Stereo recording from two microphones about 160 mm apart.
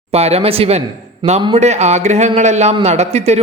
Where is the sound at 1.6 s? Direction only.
45° right (ahead or behind).